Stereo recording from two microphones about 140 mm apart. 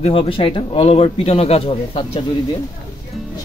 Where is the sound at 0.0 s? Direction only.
40° left (ahead or behind).